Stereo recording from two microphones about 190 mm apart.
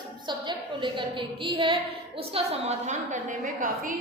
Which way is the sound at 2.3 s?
35° right (ahead or behind).